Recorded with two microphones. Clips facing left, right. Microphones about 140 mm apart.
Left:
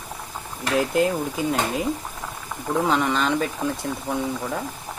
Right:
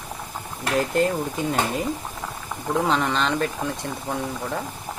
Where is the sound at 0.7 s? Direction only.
Centre (ahead or behind).